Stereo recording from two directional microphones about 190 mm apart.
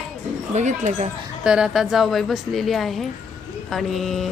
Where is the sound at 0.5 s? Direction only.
40° right (ahead or behind).